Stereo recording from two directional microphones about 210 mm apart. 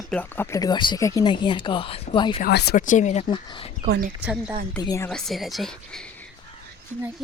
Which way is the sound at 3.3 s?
25° left (ahead or behind).